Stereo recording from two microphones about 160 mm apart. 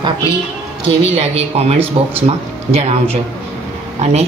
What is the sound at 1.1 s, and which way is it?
Speech, 40° right (ahead or behind).